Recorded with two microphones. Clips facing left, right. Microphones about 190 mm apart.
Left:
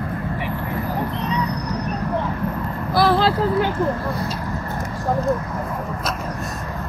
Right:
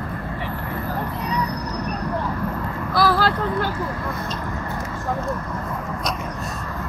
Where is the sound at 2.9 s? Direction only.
25° left (ahead or behind).